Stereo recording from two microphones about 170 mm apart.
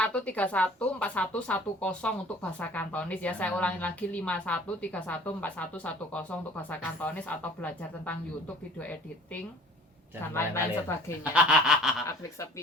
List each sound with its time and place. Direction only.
0.0 s speech: 10° left (ahead or behind)
11.2 s snicker: 5° right (ahead or behind)
12.0 s speech: 15° left (ahead or behind)